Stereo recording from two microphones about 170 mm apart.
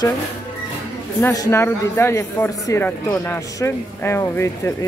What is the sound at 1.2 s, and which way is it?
Speech, 15° left (ahead or behind).